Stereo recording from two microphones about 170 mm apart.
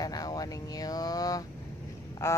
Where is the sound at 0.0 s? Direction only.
25° left (ahead or behind).